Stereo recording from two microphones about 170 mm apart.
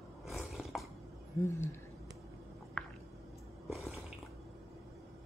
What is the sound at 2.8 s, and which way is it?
Squish, 5° left (ahead or behind).